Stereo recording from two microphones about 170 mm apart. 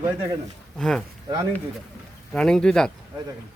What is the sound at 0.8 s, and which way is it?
Speech, 5° left (ahead or behind).